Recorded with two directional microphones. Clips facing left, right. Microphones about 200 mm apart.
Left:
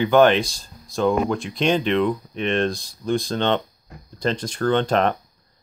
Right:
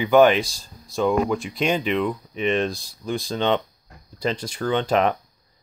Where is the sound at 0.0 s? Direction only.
5° right (ahead or behind).